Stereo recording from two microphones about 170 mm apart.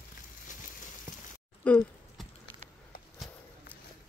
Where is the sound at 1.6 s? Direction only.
5° left (ahead or behind).